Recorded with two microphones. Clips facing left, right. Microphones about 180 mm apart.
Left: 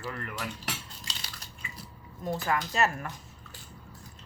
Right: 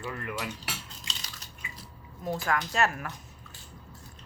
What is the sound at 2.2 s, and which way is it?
Speech, centre (ahead or behind).